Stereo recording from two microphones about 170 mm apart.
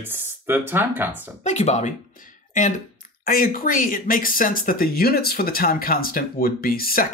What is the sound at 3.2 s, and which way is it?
Speech, 60° left (ahead or behind).